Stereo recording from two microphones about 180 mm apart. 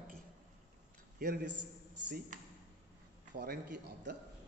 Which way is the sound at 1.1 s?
65° right (ahead or behind).